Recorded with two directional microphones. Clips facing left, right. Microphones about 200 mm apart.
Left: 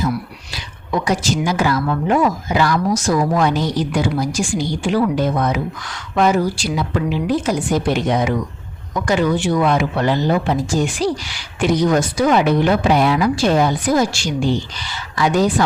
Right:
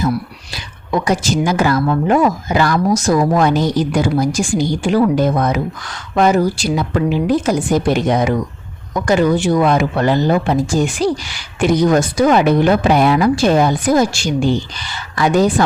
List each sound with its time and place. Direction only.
1.0 s speech: 45° right (ahead or behind)